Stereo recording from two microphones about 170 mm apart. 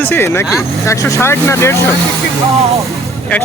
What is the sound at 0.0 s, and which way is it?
Speech, 10° left (ahead or behind).